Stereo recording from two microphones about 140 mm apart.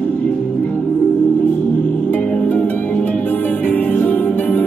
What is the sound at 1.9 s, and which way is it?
Music, 10° left (ahead or behind).